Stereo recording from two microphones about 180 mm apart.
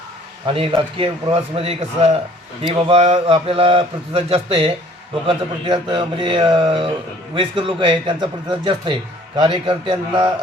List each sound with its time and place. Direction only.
0.4 s speech: 30° right (ahead or behind)